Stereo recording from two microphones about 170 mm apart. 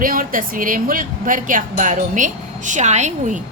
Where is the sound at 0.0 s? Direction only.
55° right (ahead or behind).